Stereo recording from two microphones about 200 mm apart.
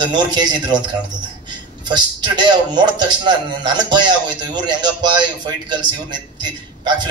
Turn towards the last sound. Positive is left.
turn(degrees=-20)  # may be behind; listen again after turning